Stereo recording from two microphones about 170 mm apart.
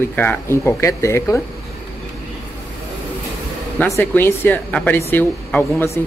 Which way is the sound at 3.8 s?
15° left (ahead or behind).